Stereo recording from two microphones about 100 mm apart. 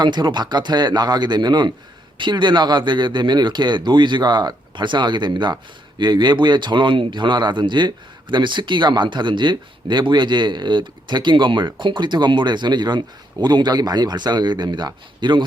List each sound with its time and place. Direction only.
0.0 s speech: 45° right (ahead or behind)